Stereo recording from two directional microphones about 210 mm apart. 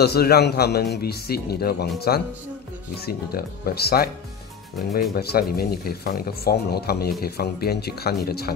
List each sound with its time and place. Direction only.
0.0 s speech: 50° left (ahead or behind)
5.1 s speech: 50° left (ahead or behind)